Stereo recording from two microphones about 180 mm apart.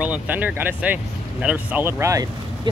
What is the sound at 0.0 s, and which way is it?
Speech, 10° right (ahead or behind).